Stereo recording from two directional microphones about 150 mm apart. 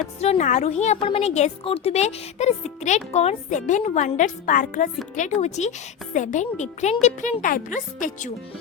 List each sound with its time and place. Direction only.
0.2 s a child's voice: 50° left (ahead or behind)